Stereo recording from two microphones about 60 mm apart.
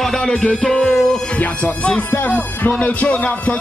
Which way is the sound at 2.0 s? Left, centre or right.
Left.